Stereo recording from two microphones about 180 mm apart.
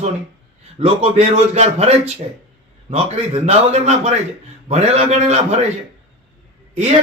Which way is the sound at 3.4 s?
35° right (ahead or behind).